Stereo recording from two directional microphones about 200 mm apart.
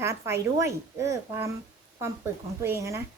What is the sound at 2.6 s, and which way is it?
Speech, 15° right (ahead or behind).